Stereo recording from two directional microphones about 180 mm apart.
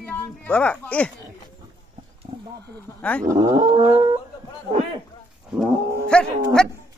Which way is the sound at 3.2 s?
20° right (ahead or behind).